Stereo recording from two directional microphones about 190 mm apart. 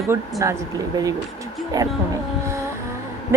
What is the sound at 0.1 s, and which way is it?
Speech, 15° right (ahead or behind).